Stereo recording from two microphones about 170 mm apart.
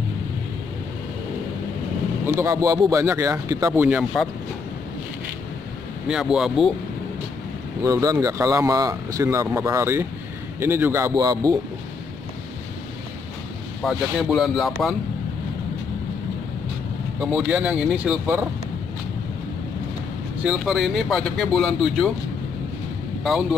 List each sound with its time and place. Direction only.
2.2 s speech: 15° right (ahead or behind)
4.1 s speech: centre (ahead or behind)
6.0 s speech: 5° right (ahead or behind)
7.8 s speech: 20° right (ahead or behind)
13.8 s speech: centre (ahead or behind)
17.3 s speech: 5° right (ahead or behind)
20.4 s speech: centre (ahead or behind)